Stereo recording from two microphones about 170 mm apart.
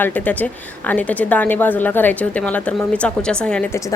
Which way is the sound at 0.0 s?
10° left (ahead or behind).